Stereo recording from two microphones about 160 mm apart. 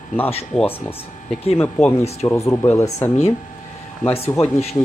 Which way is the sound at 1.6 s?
10° left (ahead or behind).